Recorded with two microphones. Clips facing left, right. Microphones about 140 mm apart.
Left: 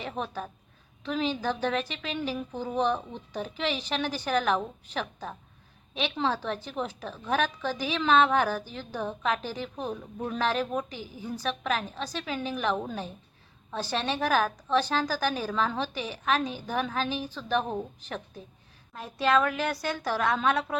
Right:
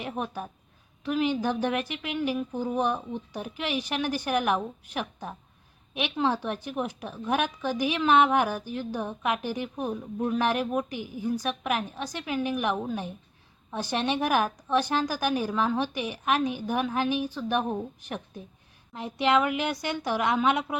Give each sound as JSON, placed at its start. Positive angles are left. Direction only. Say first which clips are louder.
{"t": 0.0, "sound": "a woman's voice", "louder": "right 1 dB", "side_deg": -10}
{"t": 18.9, "sound": "a woman's voice", "louder": "right 1 dB", "side_deg": -20}